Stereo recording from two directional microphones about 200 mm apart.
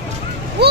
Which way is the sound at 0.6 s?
55° right (ahead or behind).